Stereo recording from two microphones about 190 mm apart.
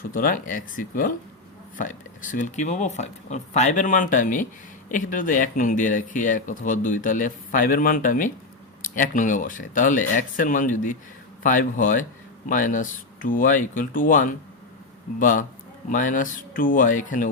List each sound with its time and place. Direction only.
0.1 s speech: 45° left (ahead or behind)